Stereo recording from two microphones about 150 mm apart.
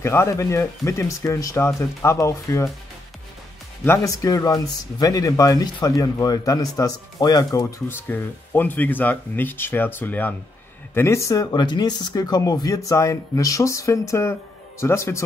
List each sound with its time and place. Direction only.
0.0 s speech: 15° left (ahead or behind)
3.8 s speech: 20° left (ahead or behind)
8.1 s speech: 10° left (ahead or behind)